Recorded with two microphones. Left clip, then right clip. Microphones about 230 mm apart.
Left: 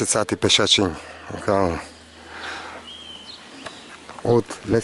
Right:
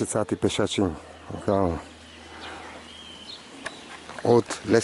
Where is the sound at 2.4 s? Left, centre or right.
Centre.